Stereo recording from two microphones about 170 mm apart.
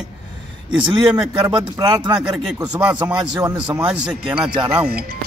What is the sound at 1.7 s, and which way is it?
Speech, 25° right (ahead or behind).